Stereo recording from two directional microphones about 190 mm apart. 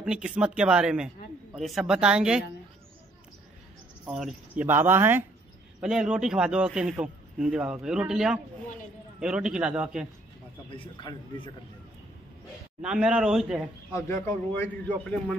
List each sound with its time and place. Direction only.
0.0 s a man's voice: 5° right (ahead or behind)
4.0 s a man's voice: centre (ahead or behind)
10.7 s speech: 25° left (ahead or behind)
12.8 s a man's voice: 5° right (ahead or behind)
13.9 s a man's voice: 15° left (ahead or behind)